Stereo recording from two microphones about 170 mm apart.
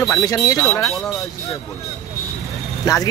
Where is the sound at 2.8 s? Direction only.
20° left (ahead or behind).